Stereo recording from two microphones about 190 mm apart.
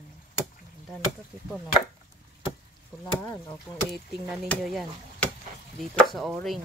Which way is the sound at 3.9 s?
Centre (ahead or behind).